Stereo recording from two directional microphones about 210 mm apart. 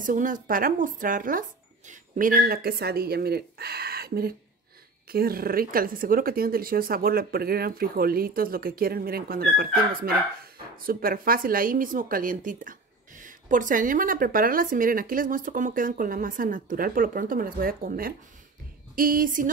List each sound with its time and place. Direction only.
0.0 s speech: 40° right (ahead or behind)